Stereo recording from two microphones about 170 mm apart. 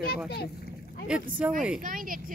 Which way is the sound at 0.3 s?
65° left (ahead or behind).